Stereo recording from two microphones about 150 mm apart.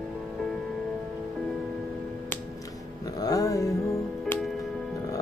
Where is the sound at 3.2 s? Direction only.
25° left (ahead or behind).